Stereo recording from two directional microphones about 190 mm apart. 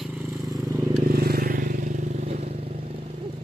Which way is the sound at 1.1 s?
55° right (ahead or behind).